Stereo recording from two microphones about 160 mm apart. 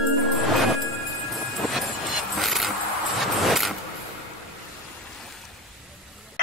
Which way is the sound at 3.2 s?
Centre (ahead or behind).